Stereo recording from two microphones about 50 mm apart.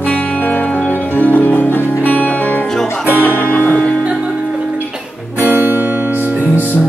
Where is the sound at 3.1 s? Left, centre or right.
Left.